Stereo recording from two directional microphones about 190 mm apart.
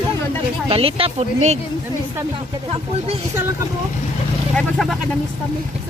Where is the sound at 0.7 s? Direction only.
30° right (ahead or behind).